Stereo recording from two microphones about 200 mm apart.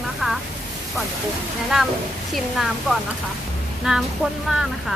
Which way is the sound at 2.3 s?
Centre (ahead or behind).